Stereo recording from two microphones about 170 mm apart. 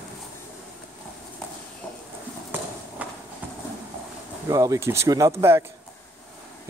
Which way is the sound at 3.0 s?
10° right (ahead or behind).